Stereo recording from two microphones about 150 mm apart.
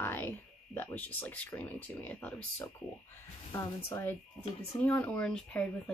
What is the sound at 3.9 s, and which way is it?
Speech, 20° left (ahead or behind).